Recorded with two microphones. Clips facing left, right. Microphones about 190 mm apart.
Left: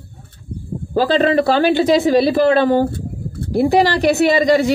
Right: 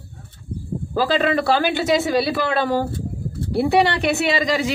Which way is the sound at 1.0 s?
35° left (ahead or behind).